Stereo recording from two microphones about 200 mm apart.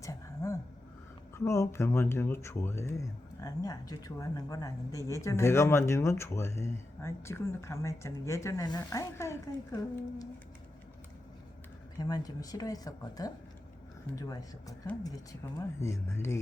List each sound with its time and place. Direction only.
0.0 s a sound: 15° left (ahead or behind)
1.5 s speech: 15° left (ahead or behind)
11.9 s speech: 20° left (ahead or behind)